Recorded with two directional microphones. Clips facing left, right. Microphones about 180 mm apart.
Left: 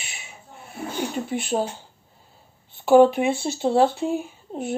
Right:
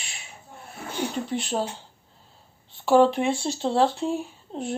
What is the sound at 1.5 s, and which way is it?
Speech, 25° left (ahead or behind).